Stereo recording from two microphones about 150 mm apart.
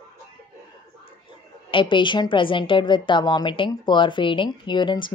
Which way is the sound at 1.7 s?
35° left (ahead or behind).